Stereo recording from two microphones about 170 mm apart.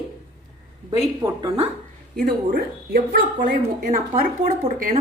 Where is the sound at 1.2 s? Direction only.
20° right (ahead or behind).